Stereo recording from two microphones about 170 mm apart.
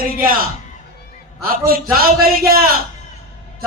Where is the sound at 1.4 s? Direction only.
60° right (ahead or behind).